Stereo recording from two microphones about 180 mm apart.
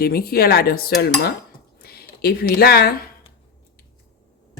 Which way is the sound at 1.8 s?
60° left (ahead or behind).